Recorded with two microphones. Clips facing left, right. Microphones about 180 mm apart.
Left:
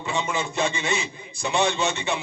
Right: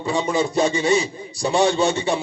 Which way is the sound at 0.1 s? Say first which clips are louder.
Right 7 dB; 35° right (ahead or behind).